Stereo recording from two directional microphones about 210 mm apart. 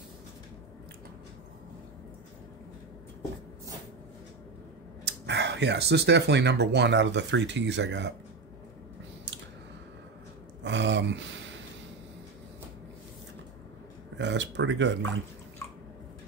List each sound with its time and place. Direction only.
5.0 s speech: 55° right (ahead or behind)
10.6 s a sound: 60° right (ahead or behind)
14.1 s speech: 55° right (ahead or behind)